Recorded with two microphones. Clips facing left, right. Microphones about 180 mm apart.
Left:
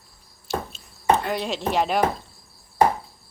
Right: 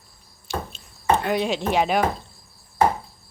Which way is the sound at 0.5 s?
Centre (ahead or behind).